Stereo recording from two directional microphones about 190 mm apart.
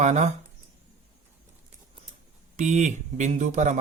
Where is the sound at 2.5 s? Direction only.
40° right (ahead or behind).